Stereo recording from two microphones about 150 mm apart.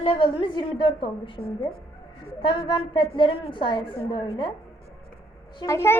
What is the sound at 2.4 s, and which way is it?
A child's voice, 35° left (ahead or behind).